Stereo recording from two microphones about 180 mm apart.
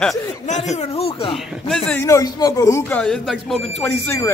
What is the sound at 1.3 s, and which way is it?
Speech, 5° left (ahead or behind).